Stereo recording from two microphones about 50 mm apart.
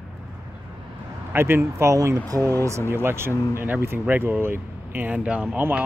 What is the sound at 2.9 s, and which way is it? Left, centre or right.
Speech, right.